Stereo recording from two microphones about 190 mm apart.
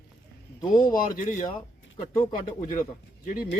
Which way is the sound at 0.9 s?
45° left (ahead or behind).